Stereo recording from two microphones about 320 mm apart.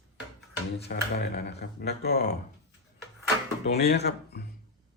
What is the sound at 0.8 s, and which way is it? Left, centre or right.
Speech, left.